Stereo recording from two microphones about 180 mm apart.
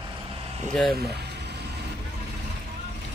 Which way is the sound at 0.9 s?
65° right (ahead or behind).